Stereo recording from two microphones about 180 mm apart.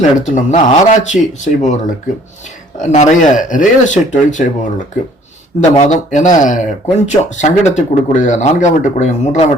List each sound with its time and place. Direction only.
0.2 s speech: 40° left (ahead or behind)
5.5 s speech: 40° left (ahead or behind)